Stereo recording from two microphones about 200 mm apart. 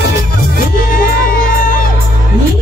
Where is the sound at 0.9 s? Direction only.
45° left (ahead or behind).